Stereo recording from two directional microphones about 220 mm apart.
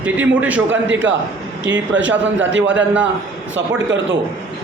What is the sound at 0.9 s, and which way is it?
A man's voice, 55° right (ahead or behind).